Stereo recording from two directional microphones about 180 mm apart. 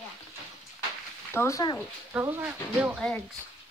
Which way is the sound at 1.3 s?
15° left (ahead or behind).